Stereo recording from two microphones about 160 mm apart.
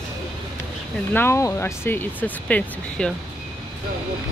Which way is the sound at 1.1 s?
15° left (ahead or behind).